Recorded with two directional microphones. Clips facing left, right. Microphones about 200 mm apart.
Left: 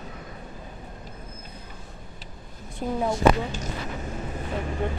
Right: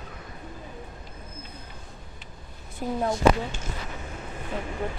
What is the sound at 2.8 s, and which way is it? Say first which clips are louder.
Speech: left 1 dB; 5° right (ahead or behind).